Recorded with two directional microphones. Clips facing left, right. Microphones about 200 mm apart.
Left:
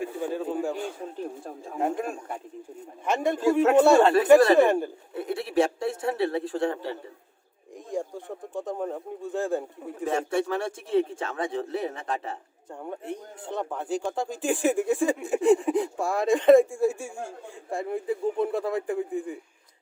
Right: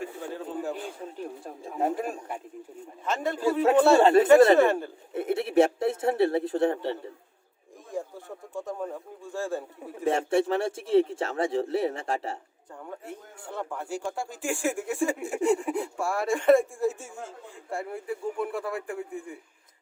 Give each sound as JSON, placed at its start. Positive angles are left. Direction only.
{"t": 0.4, "sound": "a sound", "side_deg": 15}
{"t": 1.8, "sound": "a man's voice", "side_deg": -5}
{"t": 3.0, "sound": "speech", "side_deg": 15}
{"t": 4.0, "sound": "speech", "side_deg": -25}
{"t": 4.5, "sound": "speech", "side_deg": 15}
{"t": 5.1, "sound": "a sound", "side_deg": -25}
{"t": 8.5, "sound": "bird", "side_deg": 20}
{"t": 10.0, "sound": "speech", "side_deg": -25}
{"t": 12.8, "sound": "speech", "side_deg": 20}